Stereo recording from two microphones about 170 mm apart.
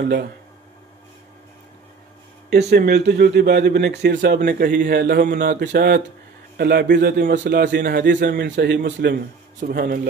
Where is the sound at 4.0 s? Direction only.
85° right.